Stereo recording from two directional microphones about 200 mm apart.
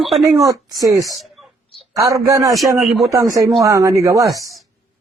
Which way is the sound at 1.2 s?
Centre (ahead or behind).